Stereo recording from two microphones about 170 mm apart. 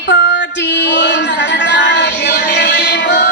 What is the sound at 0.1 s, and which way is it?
Music, 90° left.